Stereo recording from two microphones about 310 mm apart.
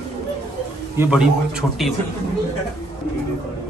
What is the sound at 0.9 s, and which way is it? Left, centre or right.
A man's voice, centre.